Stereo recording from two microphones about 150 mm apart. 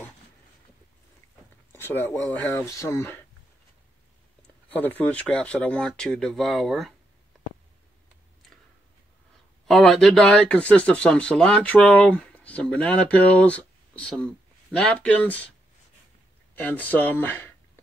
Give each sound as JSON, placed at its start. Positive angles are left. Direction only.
{"t": 1.7, "sound": "speech", "side_deg": 15}
{"t": 4.6, "sound": "speech", "side_deg": 10}
{"t": 9.7, "sound": "speech", "side_deg": 5}
{"t": 16.5, "sound": "speech", "side_deg": 10}